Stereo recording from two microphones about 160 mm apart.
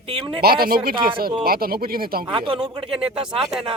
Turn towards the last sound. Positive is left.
turn(degrees=0)  # may be behind; listen again after turning